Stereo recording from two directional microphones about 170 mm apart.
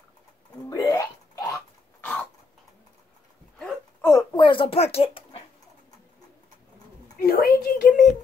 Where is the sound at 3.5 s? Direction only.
5° left (ahead or behind).